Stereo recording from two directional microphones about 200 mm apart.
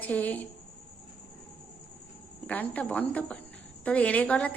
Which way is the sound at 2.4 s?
5° left (ahead or behind).